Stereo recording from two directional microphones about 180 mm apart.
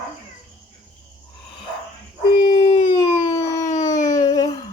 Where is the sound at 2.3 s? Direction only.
25° left (ahead or behind).